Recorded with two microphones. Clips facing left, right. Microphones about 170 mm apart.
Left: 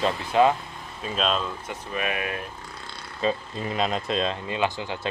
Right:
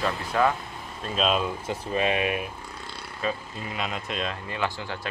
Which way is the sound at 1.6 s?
30° right (ahead or behind).